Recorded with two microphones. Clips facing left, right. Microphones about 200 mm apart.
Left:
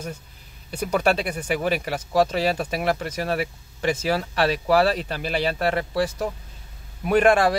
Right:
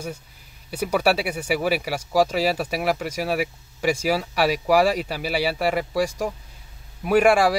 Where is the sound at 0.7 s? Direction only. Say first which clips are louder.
Right 1 dB; 5° right (ahead or behind).